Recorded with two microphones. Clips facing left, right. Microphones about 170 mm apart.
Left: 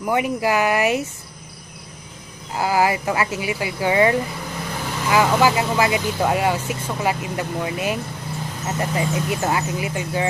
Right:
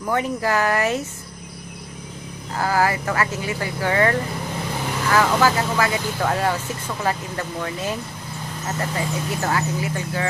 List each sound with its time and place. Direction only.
0.0 s speech: 15° left (ahead or behind)
2.5 s speech: 15° left (ahead or behind)